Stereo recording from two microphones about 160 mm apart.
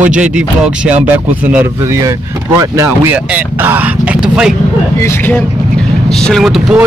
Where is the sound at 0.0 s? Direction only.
5° right (ahead or behind).